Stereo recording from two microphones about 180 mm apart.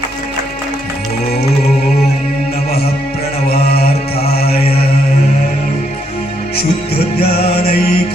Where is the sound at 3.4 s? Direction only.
60° left (ahead or behind).